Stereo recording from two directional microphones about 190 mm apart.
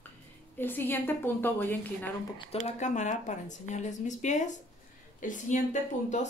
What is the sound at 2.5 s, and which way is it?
Speech, 35° left (ahead or behind).